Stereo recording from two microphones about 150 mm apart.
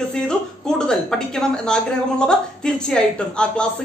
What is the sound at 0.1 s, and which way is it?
A woman's voice, 5° left (ahead or behind).